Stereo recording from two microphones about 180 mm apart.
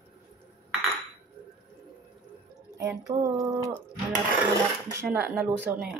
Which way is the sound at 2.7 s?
15° right (ahead or behind).